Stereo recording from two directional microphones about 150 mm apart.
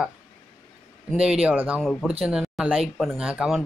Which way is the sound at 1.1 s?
5° right (ahead or behind).